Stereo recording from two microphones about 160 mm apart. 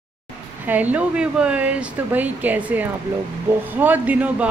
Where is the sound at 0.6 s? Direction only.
10° right (ahead or behind).